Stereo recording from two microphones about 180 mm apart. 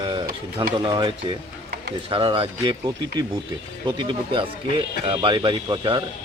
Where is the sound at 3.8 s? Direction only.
25° right (ahead or behind).